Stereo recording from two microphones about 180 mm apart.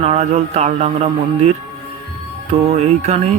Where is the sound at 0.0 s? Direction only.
40° right (ahead or behind).